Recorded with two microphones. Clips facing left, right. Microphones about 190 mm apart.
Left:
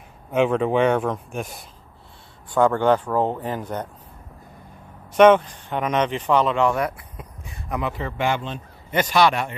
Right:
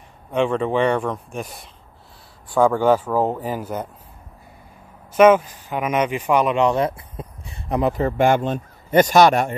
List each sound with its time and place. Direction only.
0.3 s speech: 5° left (ahead or behind)
5.1 s speech: 5° right (ahead or behind); by 9.6 s 45° right (ahead or behind)